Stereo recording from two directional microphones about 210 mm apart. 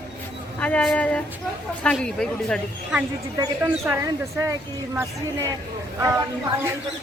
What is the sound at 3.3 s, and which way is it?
Speech, 10° right (ahead or behind).